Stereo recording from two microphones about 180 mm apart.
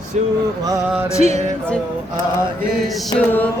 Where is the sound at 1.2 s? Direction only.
40° right (ahead or behind).